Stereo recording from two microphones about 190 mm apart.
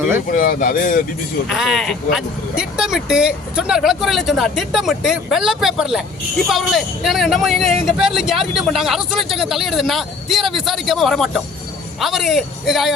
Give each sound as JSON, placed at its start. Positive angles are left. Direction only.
{"t": 0.3, "sound": "speech", "side_deg": 45}
{"t": 1.5, "sound": "speech", "side_deg": 0}